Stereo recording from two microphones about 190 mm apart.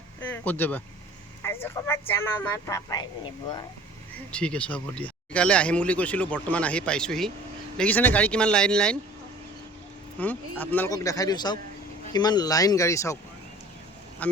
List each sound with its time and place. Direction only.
0.2 s speech: 10° left (ahead or behind)
4.3 s speech: 5° left (ahead or behind)
10.2 s speech: 10° left (ahead or behind)
14.2 s speech: 10° left (ahead or behind)